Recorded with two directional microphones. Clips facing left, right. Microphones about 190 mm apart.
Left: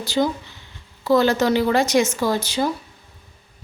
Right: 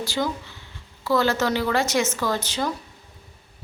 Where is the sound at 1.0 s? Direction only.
20° left (ahead or behind).